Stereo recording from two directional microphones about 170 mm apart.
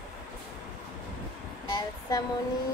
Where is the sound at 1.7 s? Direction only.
25° left (ahead or behind).